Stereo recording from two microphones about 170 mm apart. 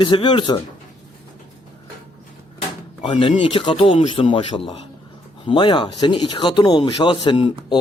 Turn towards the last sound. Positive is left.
turn(degrees=30)  # may be behind; listen again after turning